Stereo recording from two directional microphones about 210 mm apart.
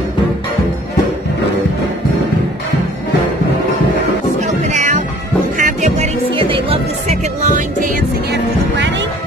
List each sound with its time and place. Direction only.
4.4 s music: 35° right (ahead or behind)
8.7 s music: 60° right (ahead or behind)